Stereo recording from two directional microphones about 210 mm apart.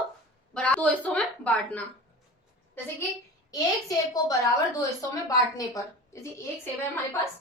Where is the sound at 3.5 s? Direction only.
15° left (ahead or behind).